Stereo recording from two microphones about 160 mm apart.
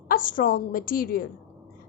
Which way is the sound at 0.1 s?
60° left (ahead or behind).